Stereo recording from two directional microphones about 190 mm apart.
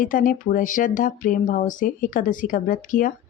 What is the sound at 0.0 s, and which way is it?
Speech, 45° left (ahead or behind).